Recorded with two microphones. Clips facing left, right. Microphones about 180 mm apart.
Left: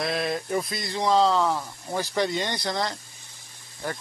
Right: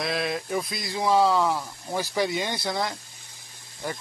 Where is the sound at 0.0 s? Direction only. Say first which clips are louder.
Left 1 dB; centre (ahead or behind).